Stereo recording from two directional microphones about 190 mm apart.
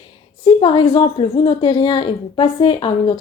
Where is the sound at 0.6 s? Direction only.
30° left (ahead or behind).